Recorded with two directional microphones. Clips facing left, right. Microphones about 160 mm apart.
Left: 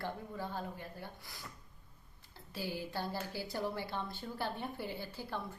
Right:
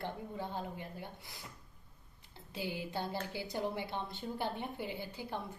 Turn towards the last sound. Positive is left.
turn(degrees=-20)  # may be behind; listen again after turning